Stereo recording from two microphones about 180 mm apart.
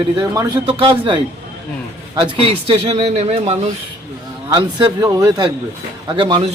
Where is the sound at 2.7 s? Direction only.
35° right (ahead or behind).